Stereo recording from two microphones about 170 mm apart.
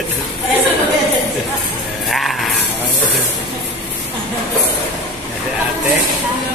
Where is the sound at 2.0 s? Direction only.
Centre (ahead or behind).